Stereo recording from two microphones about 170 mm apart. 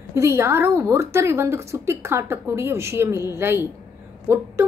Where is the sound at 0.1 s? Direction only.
15° right (ahead or behind).